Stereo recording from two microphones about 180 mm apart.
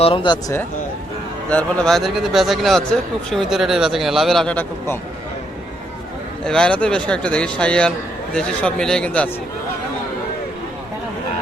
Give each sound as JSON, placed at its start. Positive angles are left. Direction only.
{"t": 0.0, "sound": "speech", "side_deg": 30}
{"t": 1.5, "sound": "a man's voice", "side_deg": 5}
{"t": 6.4, "sound": "a man's voice", "side_deg": 5}